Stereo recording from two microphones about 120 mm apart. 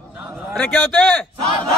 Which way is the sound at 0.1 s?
15° right (ahead or behind).